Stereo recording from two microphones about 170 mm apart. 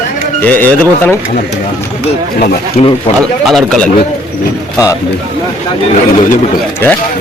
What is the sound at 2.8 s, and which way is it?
Speech, 45° left (ahead or behind).